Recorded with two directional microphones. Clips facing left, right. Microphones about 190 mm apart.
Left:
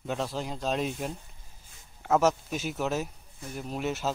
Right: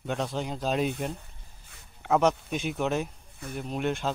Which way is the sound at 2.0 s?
5° left (ahead or behind).